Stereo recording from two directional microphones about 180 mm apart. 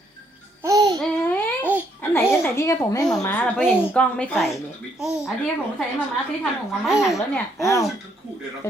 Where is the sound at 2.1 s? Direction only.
15° left (ahead or behind).